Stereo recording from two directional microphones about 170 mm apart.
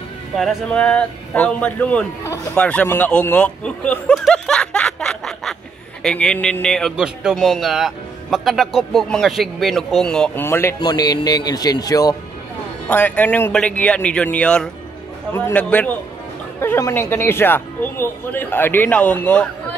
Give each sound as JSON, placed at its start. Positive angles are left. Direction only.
{"t": 0.4, "sound": "a man's voice", "side_deg": 5}
{"t": 12.8, "sound": "speech", "side_deg": 10}